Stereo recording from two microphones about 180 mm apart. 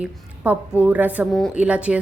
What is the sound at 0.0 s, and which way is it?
A woman's voice, 5° right (ahead or behind).